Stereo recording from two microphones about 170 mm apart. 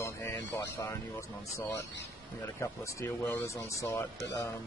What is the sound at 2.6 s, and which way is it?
A man's voice, 15° left (ahead or behind).